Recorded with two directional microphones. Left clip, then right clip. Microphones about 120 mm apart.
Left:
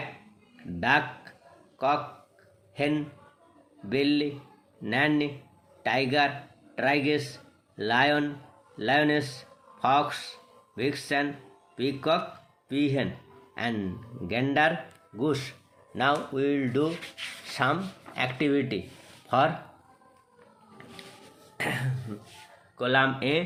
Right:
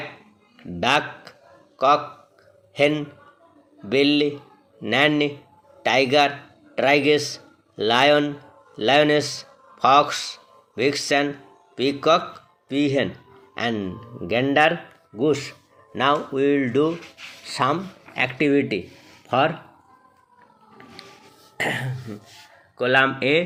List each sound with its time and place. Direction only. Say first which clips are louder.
0.8 s a man's voice: right 4 dB; 25° right (ahead or behind)
3.8 s a man's voice: right 7 dB; 25° right (ahead or behind)
21.6 s throat clearing: right 6 dB; 55° right (ahead or behind)
22.8 s speech: right 6 dB; 45° right (ahead or behind)